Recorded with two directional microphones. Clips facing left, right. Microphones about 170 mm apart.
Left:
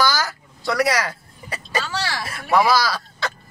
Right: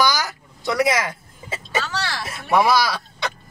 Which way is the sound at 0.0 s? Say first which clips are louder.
Even; 15° right (ahead or behind).